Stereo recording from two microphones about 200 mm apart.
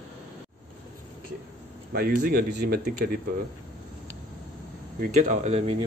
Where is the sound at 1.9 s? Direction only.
45° right (ahead or behind).